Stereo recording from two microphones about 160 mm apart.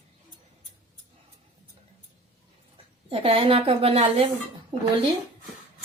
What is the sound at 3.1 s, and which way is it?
Speech, 35° right (ahead or behind).